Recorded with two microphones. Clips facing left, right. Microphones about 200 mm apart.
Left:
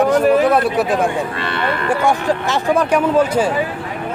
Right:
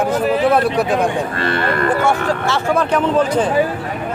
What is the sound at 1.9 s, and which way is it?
Speech, 15° left (ahead or behind).